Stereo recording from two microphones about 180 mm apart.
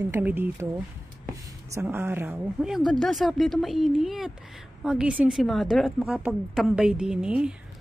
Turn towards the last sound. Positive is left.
turn(degrees=-5)  # may be behind; listen again after turning